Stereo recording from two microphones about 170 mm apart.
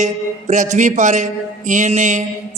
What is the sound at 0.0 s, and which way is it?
A man's voice, 45° right (ahead or behind).